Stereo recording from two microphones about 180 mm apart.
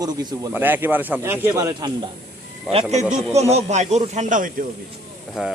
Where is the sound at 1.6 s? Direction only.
20° right (ahead or behind).